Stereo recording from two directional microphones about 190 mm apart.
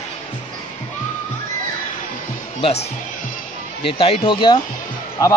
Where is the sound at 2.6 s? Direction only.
35° left (ahead or behind).